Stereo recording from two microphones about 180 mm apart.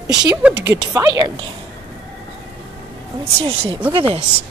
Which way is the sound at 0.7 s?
20° right (ahead or behind).